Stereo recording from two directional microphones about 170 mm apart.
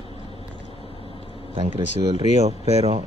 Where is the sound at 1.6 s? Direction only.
30° right (ahead or behind).